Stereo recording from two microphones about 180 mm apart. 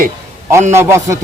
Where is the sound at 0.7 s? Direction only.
15° right (ahead or behind).